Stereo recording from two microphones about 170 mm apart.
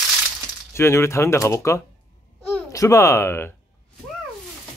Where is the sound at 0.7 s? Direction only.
15° left (ahead or behind).